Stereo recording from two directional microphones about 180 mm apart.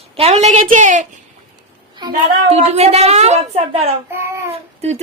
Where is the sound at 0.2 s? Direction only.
35° right (ahead or behind).